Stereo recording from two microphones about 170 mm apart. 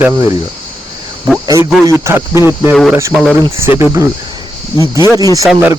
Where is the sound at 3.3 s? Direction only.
20° right (ahead or behind).